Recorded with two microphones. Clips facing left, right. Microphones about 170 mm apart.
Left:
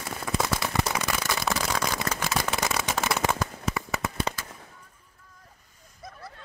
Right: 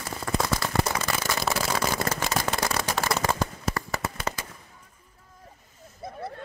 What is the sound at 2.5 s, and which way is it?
Fireworks, centre (ahead or behind).